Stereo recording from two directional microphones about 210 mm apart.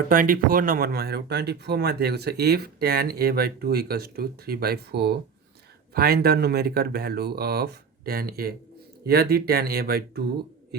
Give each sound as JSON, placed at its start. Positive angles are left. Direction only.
{"t": 0.1, "sound": "speech", "side_deg": -40}